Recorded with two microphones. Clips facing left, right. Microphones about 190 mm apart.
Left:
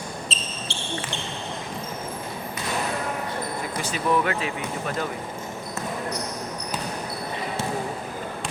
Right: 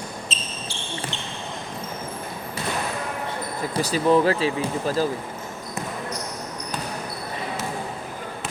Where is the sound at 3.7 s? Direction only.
35° right (ahead or behind).